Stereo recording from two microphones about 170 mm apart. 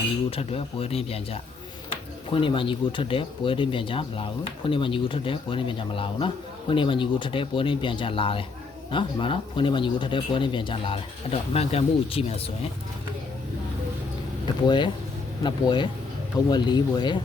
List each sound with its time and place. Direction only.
0.3 s speech: 35° left (ahead or behind)
14.4 s speech: 25° left (ahead or behind)